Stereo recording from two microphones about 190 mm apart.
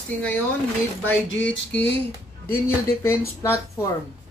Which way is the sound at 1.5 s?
5° left (ahead or behind).